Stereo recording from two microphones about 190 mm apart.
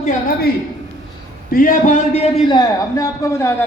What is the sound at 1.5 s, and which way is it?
Speech, 50° left (ahead or behind).